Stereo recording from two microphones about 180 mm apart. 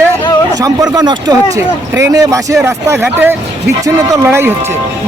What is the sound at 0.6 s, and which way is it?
Speech, 20° right (ahead or behind).